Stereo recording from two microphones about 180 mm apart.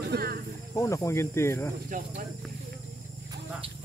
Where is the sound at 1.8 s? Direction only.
50° right (ahead or behind).